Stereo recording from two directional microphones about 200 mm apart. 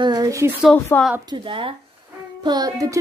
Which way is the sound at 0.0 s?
20° right (ahead or behind).